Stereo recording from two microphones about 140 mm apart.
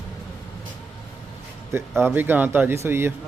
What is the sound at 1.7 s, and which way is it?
Speech, 15° right (ahead or behind).